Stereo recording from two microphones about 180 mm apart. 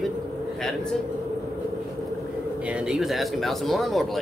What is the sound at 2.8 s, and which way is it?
Speech, centre (ahead or behind).